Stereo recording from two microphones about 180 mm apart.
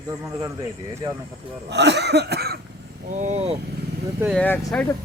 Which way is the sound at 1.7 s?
70° right (ahead or behind).